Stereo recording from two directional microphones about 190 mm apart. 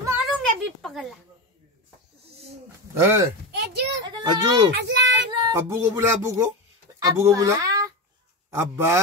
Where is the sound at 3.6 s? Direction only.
60° right (ahead or behind).